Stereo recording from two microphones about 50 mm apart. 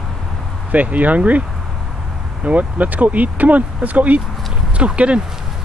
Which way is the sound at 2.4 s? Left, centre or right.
Right.